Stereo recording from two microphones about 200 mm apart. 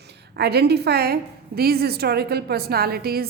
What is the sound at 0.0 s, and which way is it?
A woman's voice, 55° right (ahead or behind).